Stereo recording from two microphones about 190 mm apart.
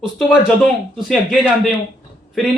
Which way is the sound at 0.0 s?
Centre (ahead or behind).